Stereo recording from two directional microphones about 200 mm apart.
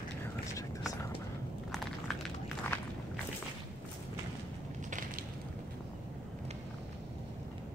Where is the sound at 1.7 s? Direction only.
Centre (ahead or behind).